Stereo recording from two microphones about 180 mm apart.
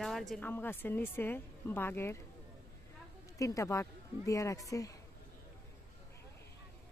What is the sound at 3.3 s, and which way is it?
Speech, 15° left (ahead or behind).